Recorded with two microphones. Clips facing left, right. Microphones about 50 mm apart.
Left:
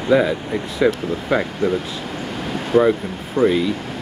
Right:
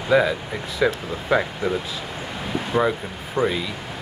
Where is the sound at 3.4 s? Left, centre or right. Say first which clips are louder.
Left 5 dB; right.